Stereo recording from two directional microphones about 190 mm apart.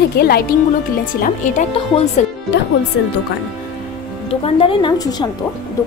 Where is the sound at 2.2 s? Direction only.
40° left (ahead or behind).